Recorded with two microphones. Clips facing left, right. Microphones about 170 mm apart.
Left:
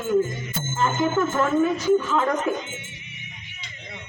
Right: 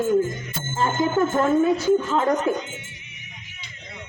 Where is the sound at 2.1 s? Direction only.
25° right (ahead or behind).